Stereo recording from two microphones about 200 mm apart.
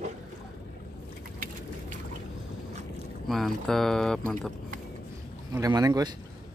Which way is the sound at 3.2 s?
Centre (ahead or behind).